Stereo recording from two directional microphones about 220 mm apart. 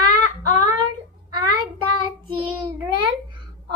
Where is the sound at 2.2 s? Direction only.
25° right (ahead or behind).